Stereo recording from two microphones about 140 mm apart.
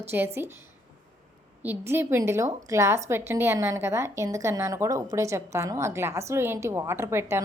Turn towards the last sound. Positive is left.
turn(degrees=-20)  # may be behind; listen again after turning